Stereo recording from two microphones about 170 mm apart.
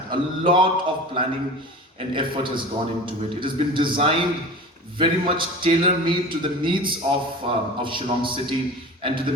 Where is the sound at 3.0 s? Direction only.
30° right (ahead or behind).